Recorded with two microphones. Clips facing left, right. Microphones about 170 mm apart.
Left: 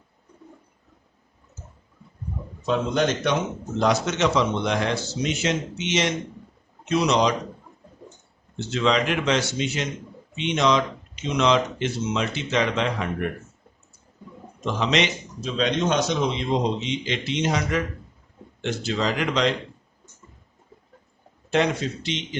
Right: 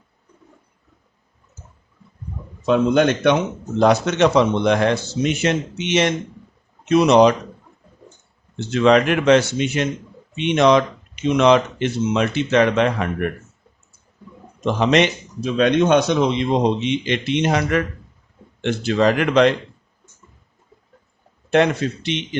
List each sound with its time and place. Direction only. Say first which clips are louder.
2.6 s speech: right 7 dB; 65° right (ahead or behind)
8.5 s speech: right 7 dB; 55° right (ahead or behind)
14.6 s speech: right 7 dB; 55° right (ahead or behind)
21.5 s speech: right 5 dB; 60° right (ahead or behind)